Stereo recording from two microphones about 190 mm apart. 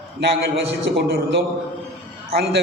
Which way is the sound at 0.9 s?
75° right (ahead or behind).